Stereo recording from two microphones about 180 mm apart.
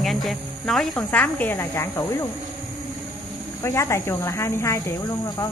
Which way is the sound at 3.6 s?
15° left (ahead or behind).